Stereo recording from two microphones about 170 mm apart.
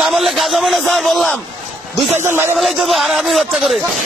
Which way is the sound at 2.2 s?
15° right (ahead or behind).